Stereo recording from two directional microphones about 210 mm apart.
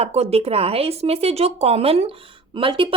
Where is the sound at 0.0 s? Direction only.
30° right (ahead or behind).